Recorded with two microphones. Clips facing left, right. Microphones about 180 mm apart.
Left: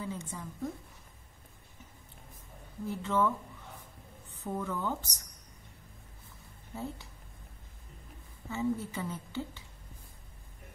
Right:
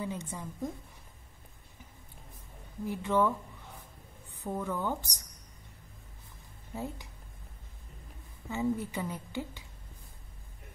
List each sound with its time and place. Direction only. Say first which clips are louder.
0.0 s a sound: right 2 dB; 20° right (ahead or behind)
2.9 s a woman's voice: right 2 dB; 15° right (ahead or behind)
4.4 s a woman's voice: right 1 dB; 10° right (ahead or behind)
6.7 s speech: right 1 dB; 15° right (ahead or behind)
8.5 s a woman's voice: right 1 dB; 15° right (ahead or behind)